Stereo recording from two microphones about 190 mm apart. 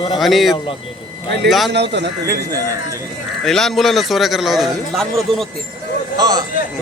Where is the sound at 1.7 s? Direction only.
65° right (ahead or behind).